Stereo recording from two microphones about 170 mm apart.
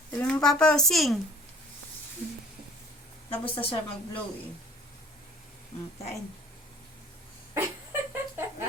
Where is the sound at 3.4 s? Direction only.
35° left (ahead or behind).